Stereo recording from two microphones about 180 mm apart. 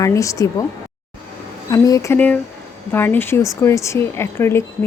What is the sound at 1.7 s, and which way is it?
A woman's voice, 20° left (ahead or behind).